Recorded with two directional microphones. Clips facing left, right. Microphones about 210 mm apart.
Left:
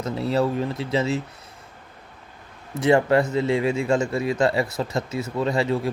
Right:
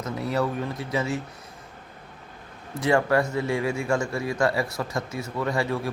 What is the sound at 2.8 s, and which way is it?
Speech, 20° left (ahead or behind).